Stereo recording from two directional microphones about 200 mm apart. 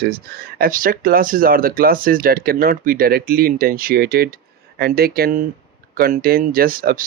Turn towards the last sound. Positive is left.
turn(degrees=-45)  # may be behind; listen again after turning